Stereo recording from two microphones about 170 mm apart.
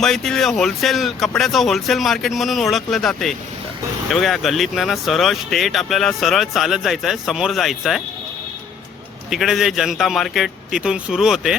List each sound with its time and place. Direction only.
0.0 s speech: 5° left (ahead or behind)
9.3 s speech: centre (ahead or behind)